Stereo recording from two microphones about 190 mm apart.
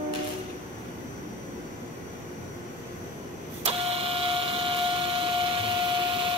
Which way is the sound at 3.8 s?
30° right (ahead or behind).